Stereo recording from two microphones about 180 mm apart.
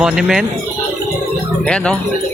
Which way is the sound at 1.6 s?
5° left (ahead or behind).